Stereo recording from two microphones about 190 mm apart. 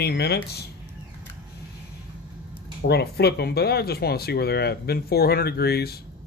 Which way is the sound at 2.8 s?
60° left (ahead or behind).